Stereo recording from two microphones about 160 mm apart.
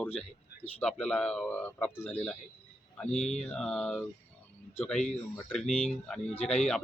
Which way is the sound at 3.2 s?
45° left (ahead or behind).